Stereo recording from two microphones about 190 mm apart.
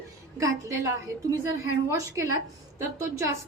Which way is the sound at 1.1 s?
15° right (ahead or behind).